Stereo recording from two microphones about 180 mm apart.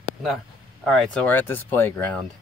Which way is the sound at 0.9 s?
5° left (ahead or behind).